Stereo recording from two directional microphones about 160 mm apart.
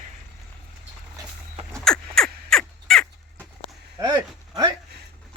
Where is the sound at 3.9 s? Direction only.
25° right (ahead or behind).